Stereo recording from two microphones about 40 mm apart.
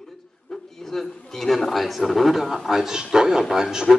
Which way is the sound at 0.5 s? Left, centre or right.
Centre.